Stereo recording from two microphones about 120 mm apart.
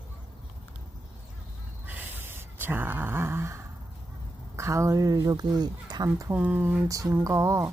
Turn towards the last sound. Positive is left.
turn(degrees=-25)  # may be behind; listen again after turning